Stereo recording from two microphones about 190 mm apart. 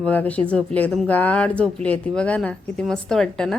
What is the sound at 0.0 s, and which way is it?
Speech, 5° left (ahead or behind).